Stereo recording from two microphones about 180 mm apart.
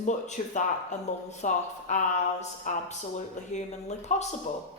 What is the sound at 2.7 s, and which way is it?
A man's voice, 45° left (ahead or behind).